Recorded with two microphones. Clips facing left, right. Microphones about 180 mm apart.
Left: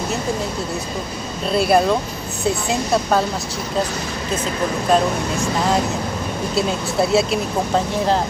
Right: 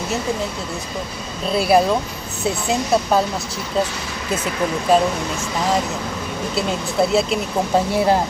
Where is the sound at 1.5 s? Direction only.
Centre (ahead or behind).